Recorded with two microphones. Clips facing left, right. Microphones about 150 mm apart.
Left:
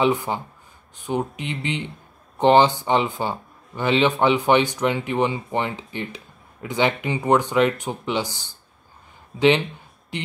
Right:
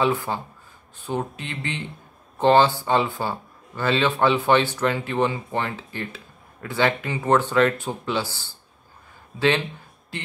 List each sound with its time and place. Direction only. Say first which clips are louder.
0.0 s speech: left 2 dB; 20° left (ahead or behind)